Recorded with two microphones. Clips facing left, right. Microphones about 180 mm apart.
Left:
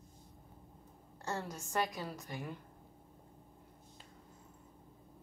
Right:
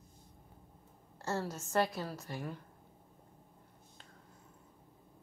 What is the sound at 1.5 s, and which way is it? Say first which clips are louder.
Speech: right 4 dB; 15° left (ahead or behind).